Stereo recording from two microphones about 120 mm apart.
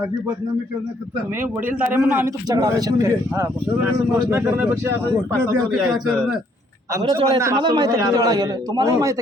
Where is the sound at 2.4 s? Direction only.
30° right (ahead or behind).